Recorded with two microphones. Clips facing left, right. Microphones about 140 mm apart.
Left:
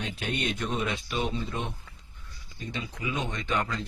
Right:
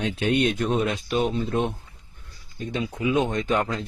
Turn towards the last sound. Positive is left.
turn(degrees=-45)  # may be behind; listen again after turning